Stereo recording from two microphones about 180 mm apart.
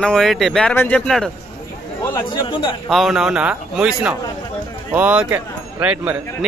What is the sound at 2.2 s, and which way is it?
Speech, 25° left (ahead or behind).